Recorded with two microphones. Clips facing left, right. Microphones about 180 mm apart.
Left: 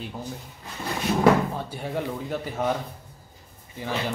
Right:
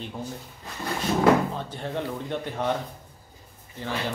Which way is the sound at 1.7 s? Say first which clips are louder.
Left 1 dB; 10° left (ahead or behind).